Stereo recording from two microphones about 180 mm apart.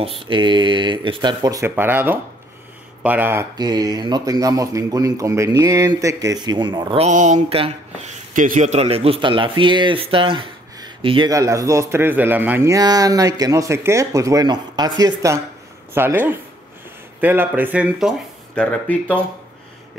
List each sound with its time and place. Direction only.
0.0 s a man's voice: 30° right (ahead or behind); by 3.4 s 10° right (ahead or behind)
3.5 s a man's voice: 25° right (ahead or behind)
7.0 s speech: 40° right (ahead or behind)
8.4 s a man's voice: 45° right (ahead or behind); by 19.1 s 10° left (ahead or behind)